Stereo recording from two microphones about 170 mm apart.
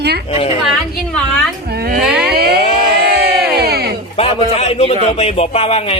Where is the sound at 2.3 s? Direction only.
65° right (ahead or behind).